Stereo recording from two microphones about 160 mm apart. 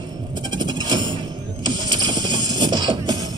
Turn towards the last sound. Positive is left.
turn(degrees=-25)  # may be behind; listen again after turning